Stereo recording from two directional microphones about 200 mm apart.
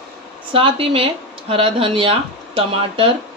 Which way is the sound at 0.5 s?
30° right (ahead or behind).